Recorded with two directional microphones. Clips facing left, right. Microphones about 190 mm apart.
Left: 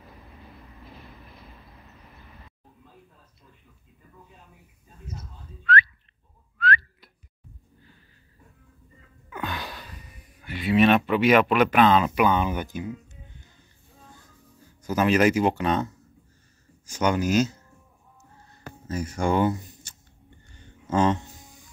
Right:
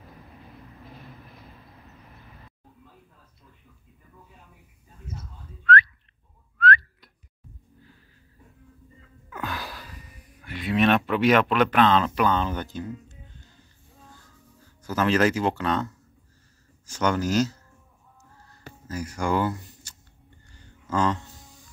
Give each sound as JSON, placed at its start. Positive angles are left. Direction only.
{"t": 5.6, "sound": "whistling", "side_deg": 0}
{"t": 9.3, "sound": "a sound", "side_deg": 0}
{"t": 14.8, "sound": "speech", "side_deg": 15}
{"t": 18.9, "sound": "speech", "side_deg": 25}
{"t": 20.5, "sound": "music", "side_deg": 20}